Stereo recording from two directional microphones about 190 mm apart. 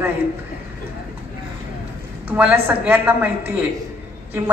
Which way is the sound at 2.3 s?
10° right (ahead or behind).